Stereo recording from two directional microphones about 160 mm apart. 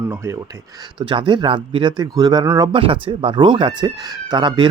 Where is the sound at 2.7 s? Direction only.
35° right (ahead or behind).